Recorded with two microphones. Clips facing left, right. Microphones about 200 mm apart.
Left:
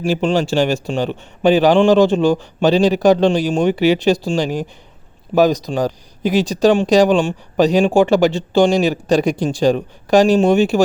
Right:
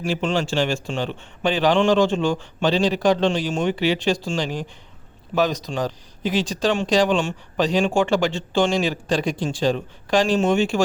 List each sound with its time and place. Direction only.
0.0 s speech: 35° left (ahead or behind)